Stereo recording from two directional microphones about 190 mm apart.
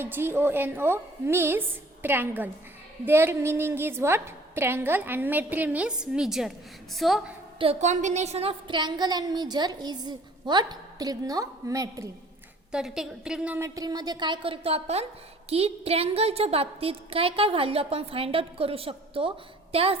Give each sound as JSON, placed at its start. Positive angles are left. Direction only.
{"t": 0.0, "sound": "a woman's voice", "side_deg": -10}
{"t": 7.6, "sound": "a woman's voice", "side_deg": -35}
{"t": 12.7, "sound": "a woman's voice", "side_deg": -5}